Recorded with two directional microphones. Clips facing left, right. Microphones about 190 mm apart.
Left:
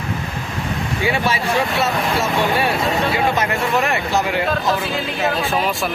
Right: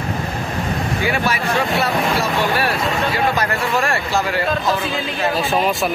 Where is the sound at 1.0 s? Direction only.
25° left (ahead or behind).